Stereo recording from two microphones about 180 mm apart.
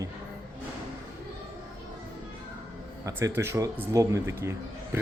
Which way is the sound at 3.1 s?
15° right (ahead or behind).